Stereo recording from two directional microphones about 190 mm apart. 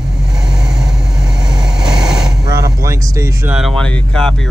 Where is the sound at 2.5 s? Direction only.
15° right (ahead or behind).